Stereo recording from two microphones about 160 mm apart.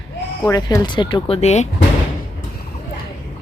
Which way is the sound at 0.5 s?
25° left (ahead or behind).